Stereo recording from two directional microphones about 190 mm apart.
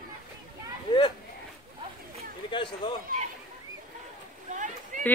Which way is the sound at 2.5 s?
25° left (ahead or behind).